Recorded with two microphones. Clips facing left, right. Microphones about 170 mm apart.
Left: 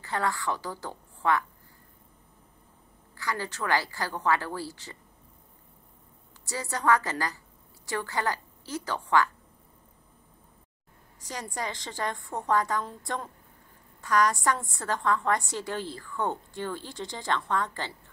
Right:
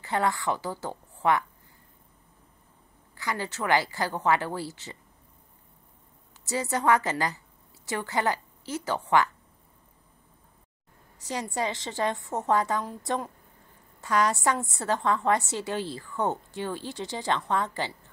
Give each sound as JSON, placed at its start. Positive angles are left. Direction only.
{"t": 0.0, "sound": "a woman's voice", "side_deg": -15}
{"t": 3.2, "sound": "a woman's voice", "side_deg": -15}
{"t": 6.5, "sound": "a woman's voice", "side_deg": -20}
{"t": 11.2, "sound": "a woman's voice", "side_deg": -20}
{"t": 14.0, "sound": "a woman's voice", "side_deg": -20}